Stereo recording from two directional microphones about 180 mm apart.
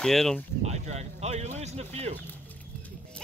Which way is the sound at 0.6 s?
40° right (ahead or behind).